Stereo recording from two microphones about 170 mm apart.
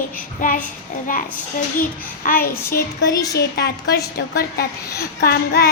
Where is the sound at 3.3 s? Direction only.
70° left (ahead or behind).